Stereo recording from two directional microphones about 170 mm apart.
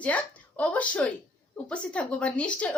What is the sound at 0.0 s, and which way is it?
A woman's voice, 10° left (ahead or behind).